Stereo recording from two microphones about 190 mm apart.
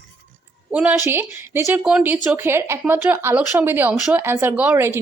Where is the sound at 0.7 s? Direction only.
5° right (ahead or behind).